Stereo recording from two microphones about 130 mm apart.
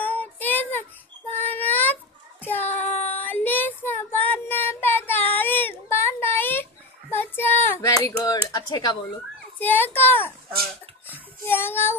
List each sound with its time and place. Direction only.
0.0 s child singing: 15° left (ahead or behind)
7.8 s speech: 25° left (ahead or behind)
9.6 s a child's voice: 15° left (ahead or behind)
11.1 s child singing: 15° left (ahead or behind)